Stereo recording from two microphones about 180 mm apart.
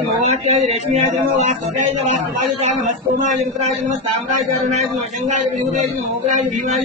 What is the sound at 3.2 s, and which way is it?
Speech, 40° right (ahead or behind).